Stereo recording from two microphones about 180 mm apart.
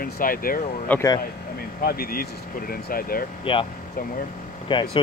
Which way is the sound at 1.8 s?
55° left (ahead or behind).